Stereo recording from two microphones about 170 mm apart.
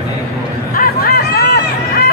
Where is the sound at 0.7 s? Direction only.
60° left (ahead or behind).